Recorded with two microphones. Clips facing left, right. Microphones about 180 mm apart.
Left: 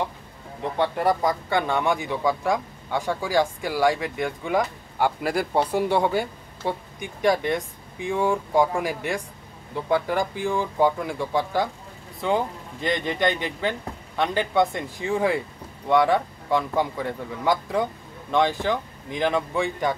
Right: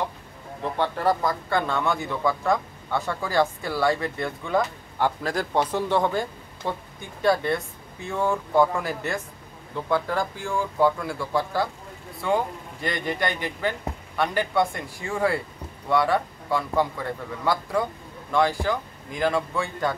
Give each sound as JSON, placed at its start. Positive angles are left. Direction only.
{"t": 0.7, "sound": "speech", "side_deg": 15}
{"t": 12.8, "sound": "speech", "side_deg": 20}